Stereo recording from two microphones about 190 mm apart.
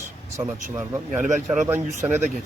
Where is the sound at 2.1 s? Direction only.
40° right (ahead or behind).